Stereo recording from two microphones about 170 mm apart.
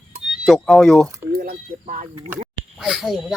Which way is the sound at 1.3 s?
55° right (ahead or behind).